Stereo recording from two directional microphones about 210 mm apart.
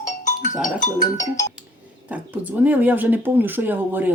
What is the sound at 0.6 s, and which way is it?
Speech, 35° left (ahead or behind).